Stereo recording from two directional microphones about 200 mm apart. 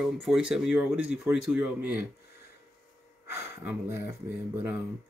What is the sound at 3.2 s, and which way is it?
Speech, 10° right (ahead or behind).